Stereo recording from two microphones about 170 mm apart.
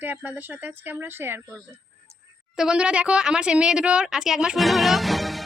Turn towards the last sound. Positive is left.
turn(degrees=0)  # may be behind; listen again after turning